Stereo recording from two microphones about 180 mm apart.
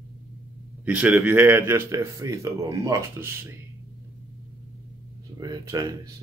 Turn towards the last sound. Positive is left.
turn(degrees=-20)  # may be behind; listen again after turning